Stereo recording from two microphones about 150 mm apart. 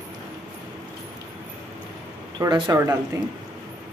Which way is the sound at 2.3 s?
30° right (ahead or behind).